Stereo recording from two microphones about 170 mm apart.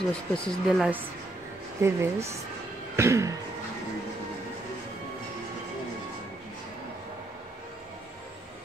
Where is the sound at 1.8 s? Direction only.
15° right (ahead or behind).